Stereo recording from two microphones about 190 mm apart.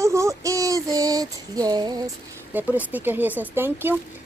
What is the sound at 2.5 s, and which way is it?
Speech, 10° right (ahead or behind).